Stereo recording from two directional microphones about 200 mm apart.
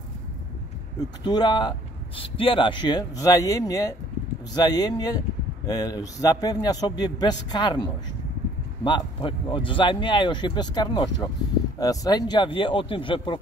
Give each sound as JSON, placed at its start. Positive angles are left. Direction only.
{"t": 0.9, "sound": "speech", "side_deg": 20}